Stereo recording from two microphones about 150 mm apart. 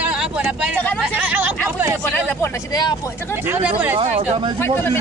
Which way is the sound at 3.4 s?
15° right (ahead or behind).